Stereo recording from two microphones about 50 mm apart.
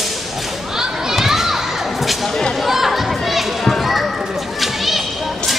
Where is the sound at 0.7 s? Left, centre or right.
Centre.